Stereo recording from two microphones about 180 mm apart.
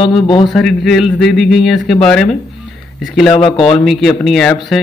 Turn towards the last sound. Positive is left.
turn(degrees=0)  # may be behind; listen again after turning